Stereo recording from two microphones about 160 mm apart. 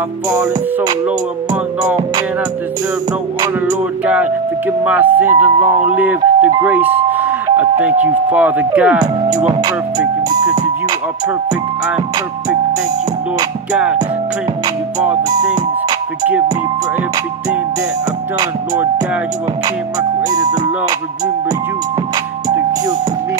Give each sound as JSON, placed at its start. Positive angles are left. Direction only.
{"t": 4.0, "sound": "speech", "side_deg": -10}
{"t": 9.6, "sound": "music", "side_deg": -25}
{"t": 20.2, "sound": "music", "side_deg": -25}